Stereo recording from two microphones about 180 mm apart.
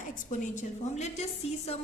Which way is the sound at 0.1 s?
45° left (ahead or behind).